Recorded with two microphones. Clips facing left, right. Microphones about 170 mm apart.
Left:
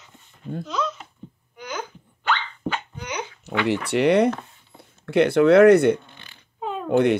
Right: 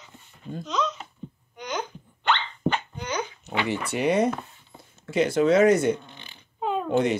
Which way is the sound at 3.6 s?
65° left (ahead or behind).